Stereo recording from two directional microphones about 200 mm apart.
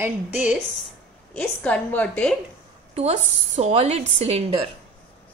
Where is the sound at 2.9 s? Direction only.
35° right (ahead or behind).